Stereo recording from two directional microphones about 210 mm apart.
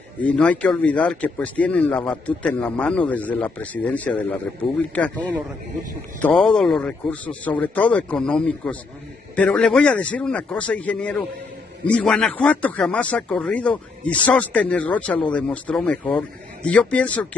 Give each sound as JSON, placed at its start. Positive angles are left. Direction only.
{"t": 0.2, "sound": "speech", "side_deg": 5}